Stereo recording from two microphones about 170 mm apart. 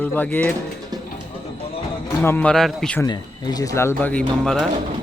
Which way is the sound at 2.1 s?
15° left (ahead or behind).